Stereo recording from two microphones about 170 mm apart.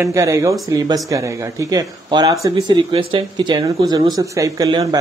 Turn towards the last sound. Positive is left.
turn(degrees=-25)  # may be behind; listen again after turning